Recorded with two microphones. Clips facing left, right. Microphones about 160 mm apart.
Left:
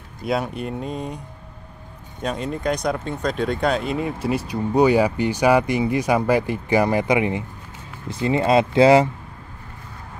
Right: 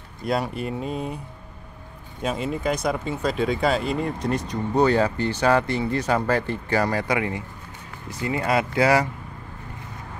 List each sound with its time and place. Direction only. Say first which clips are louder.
0.2 s speech: left 1 dB; centre (ahead or behind)
2.2 s speech: left 1 dB; 5° right (ahead or behind); by 9.1 s 25° left (ahead or behind)